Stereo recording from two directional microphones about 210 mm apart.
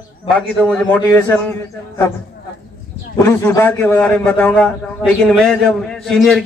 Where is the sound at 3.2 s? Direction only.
10° left (ahead or behind).